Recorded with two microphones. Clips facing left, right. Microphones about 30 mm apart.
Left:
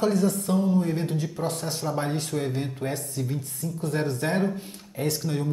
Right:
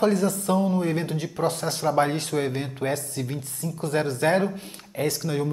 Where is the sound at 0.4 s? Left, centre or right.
Right.